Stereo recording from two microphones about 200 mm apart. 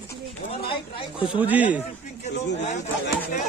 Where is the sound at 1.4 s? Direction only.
10° right (ahead or behind).